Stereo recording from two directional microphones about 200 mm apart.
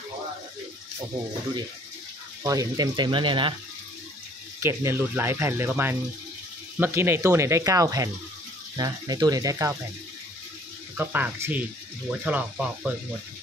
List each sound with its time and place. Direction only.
2.4 s speech: 15° right (ahead or behind)
4.6 s speech: 15° right (ahead or behind)
11.0 s speech: 10° right (ahead or behind)